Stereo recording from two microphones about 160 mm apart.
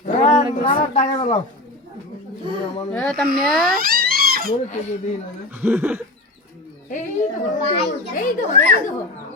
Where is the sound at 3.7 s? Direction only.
65° right (ahead or behind).